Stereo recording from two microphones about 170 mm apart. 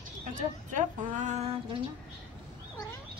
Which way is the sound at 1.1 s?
40° right (ahead or behind).